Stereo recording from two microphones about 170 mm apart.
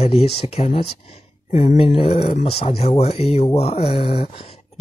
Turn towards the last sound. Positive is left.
turn(degrees=35)  # may be behind; listen again after turning